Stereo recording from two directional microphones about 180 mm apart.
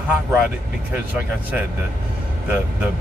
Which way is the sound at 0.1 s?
10° right (ahead or behind).